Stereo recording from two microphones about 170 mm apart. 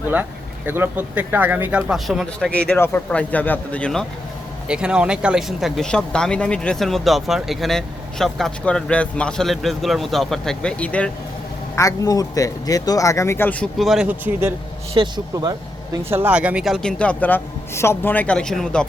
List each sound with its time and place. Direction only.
0.1 s speech: 10° right (ahead or behind); by 4.0 s 5° left (ahead or behind)
4.7 s speech: 5° right (ahead or behind)
11.8 s speech: 20° left (ahead or behind); by 14.5 s 10° right (ahead or behind)
14.9 s speech: 25° right (ahead or behind); by 18.9 s 5° left (ahead or behind)